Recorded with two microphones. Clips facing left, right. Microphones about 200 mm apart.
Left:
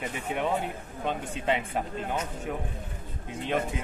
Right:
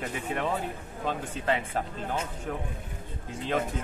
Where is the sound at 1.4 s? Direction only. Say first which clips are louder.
Left 1 dB; 10° left (ahead or behind).